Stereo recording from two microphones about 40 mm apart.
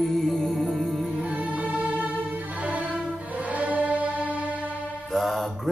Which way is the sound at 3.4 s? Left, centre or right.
Right.